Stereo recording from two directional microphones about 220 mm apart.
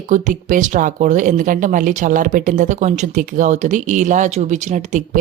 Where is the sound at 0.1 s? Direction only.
35° right (ahead or behind).